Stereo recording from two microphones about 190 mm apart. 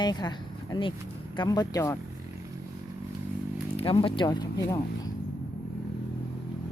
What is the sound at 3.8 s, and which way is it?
Speech, 30° left (ahead or behind).